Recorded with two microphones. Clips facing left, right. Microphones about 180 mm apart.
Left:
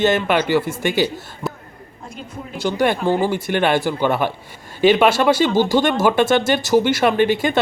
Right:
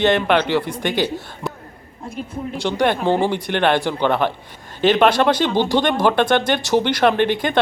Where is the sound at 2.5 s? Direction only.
5° left (ahead or behind).